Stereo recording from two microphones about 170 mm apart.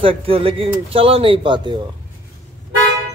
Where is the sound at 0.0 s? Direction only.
35° right (ahead or behind).